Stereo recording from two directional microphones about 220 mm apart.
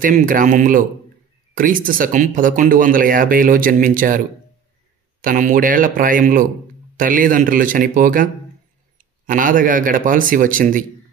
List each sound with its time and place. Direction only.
0.0 s speech: 40° right (ahead or behind)
5.2 s speech: 35° right (ahead or behind)